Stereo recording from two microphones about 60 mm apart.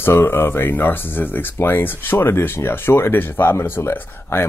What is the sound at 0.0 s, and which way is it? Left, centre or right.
Speech, left.